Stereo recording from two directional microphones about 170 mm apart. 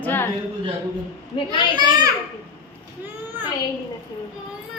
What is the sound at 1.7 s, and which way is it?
Speech, 25° right (ahead or behind).